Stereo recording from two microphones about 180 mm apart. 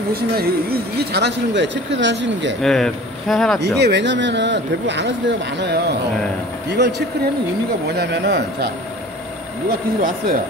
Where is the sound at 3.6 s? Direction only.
70° right (ahead or behind).